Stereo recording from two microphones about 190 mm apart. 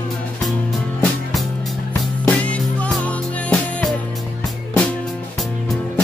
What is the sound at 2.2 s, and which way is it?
Music, 5° left (ahead or behind).